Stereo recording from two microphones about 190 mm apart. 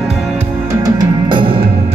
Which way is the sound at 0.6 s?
20° right (ahead or behind).